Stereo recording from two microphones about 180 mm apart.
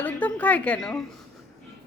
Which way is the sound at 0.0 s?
10° left (ahead or behind).